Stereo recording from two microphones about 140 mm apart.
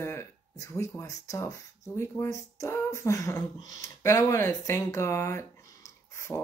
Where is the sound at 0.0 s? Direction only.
20° left (ahead or behind).